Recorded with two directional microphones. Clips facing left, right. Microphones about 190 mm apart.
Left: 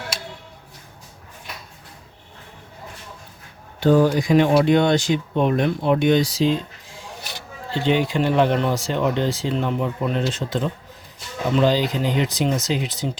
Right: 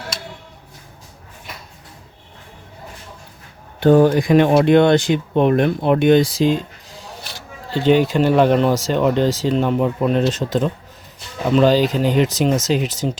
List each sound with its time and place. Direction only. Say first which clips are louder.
3.8 s speech: right 4 dB; 55° right (ahead or behind)
11.6 s speech: right 5 dB; 45° right (ahead or behind)